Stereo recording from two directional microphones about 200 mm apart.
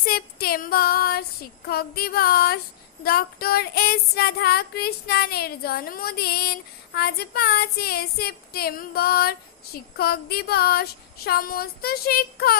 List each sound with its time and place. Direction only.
0.0 s child singing: 50° left (ahead or behind)